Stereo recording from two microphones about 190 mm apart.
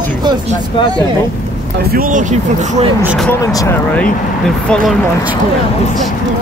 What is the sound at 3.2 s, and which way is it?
Speech, 15° left (ahead or behind).